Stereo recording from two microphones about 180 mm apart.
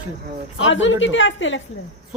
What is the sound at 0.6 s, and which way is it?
Speech, 90° left.